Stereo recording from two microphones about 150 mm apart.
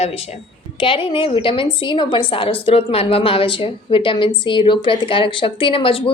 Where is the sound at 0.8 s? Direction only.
35° left (ahead or behind).